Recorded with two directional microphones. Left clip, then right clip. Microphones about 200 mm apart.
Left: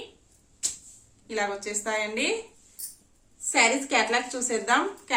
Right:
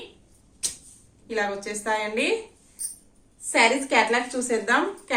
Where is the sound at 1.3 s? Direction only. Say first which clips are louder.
Right 2 dB; 60° left (ahead or behind).